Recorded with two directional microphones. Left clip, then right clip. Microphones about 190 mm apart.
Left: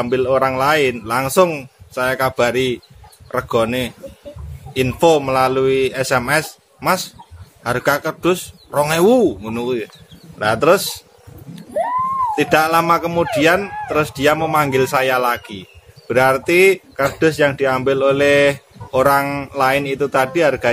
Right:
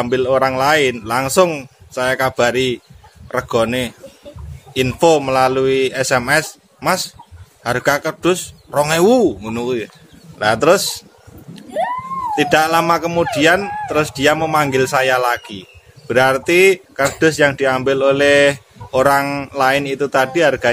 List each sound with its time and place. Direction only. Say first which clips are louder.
0.0 s speech: right 1 dB; 15° right (ahead or behind)
12.4 s speech: right 2 dB; 10° right (ahead or behind)